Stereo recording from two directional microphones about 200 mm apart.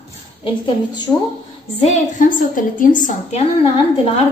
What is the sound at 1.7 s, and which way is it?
A woman's voice, 35° left (ahead or behind).